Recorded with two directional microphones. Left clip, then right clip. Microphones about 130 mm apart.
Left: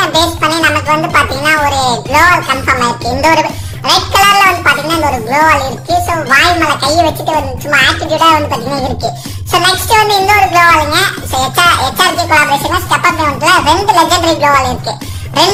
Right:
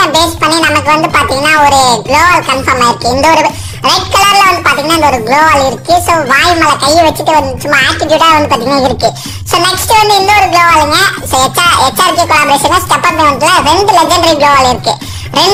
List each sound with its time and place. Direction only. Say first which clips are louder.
0.0 s a woman's voice: right 3 dB; 35° right (ahead or behind)
9.5 s a woman's voice: right 1 dB; 35° right (ahead or behind)